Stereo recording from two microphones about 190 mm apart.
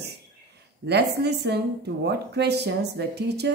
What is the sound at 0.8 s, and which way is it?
Speech, 60° right (ahead or behind).